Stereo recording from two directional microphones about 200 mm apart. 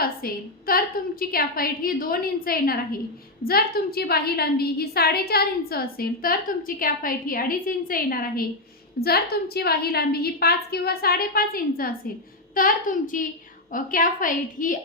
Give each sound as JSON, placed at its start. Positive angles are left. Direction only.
{"t": 0.0, "sound": "a woman's voice", "side_deg": 45}